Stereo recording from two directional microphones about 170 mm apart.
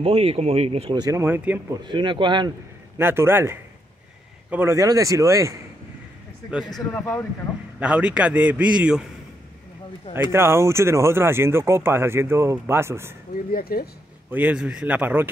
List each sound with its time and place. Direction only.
0.0 s speech: 35° right (ahead or behind); by 1.6 s 10° right (ahead or behind)
1.9 s speech: 30° right (ahead or behind)
3.0 s speech: 15° right (ahead or behind)
6.5 s speech: 5° right (ahead or behind)
6.9 s speech: 15° left (ahead or behind)
7.8 s speech: 5° right (ahead or behind)
10.3 s speech: 15° right (ahead or behind)
13.3 s speech: 60° left (ahead or behind)
14.3 s speech: 10° right (ahead or behind)